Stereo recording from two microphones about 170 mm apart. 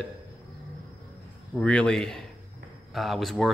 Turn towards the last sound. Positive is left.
turn(degrees=0)  # may be behind; listen again after turning